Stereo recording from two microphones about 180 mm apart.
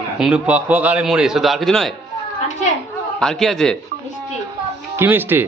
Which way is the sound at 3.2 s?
Centre (ahead or behind).